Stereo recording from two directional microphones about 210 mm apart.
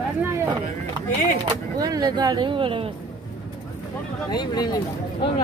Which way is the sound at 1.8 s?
20° right (ahead or behind).